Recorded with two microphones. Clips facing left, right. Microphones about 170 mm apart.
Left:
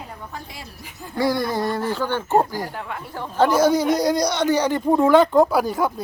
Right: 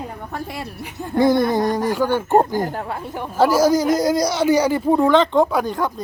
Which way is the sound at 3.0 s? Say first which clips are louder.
Right 4 dB; 20° right (ahead or behind).